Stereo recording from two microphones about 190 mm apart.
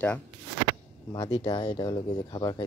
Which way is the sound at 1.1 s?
25° left (ahead or behind).